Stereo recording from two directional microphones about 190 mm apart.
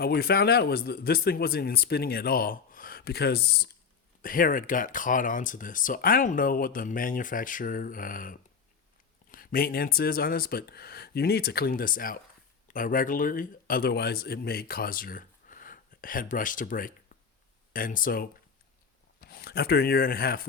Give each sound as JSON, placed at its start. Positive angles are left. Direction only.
{"t": 0.0, "sound": "speech", "side_deg": 55}
{"t": 4.2, "sound": "speech", "side_deg": 45}